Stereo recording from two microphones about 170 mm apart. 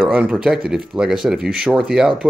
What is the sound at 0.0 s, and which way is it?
Speech, 5° right (ahead or behind).